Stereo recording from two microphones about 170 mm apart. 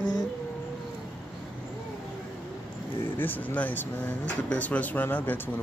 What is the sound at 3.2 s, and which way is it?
Speech, 10° left (ahead or behind).